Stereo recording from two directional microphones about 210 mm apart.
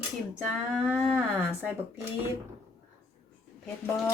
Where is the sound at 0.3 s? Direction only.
5° right (ahead or behind).